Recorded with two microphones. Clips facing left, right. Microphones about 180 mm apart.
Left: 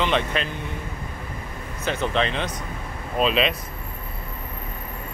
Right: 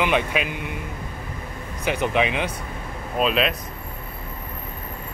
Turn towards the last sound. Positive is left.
turn(degrees=0)  # may be behind; listen again after turning